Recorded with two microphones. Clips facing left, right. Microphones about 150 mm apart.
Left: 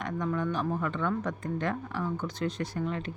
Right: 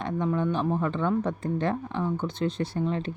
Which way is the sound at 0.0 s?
25° right (ahead or behind).